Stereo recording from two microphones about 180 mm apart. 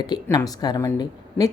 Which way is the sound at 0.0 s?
20° left (ahead or behind).